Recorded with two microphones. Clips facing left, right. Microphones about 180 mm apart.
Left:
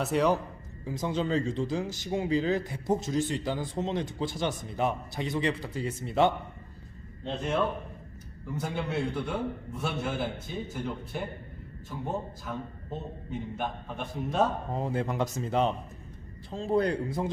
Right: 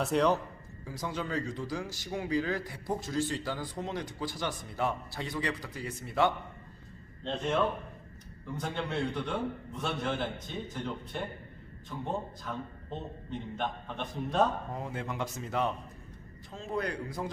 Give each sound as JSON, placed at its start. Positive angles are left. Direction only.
{"t": 0.0, "sound": "a man's voice", "side_deg": 5}
{"t": 0.9, "sound": "speech", "side_deg": 25}
{"t": 7.3, "sound": "a man's voice", "side_deg": 5}
{"t": 14.7, "sound": "speech", "side_deg": 30}